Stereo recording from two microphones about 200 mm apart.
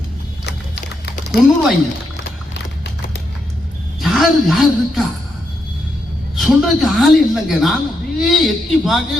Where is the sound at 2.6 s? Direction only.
55° left (ahead or behind).